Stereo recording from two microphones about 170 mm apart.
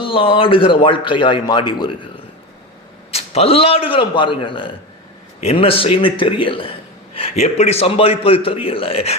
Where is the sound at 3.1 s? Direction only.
40° left (ahead or behind).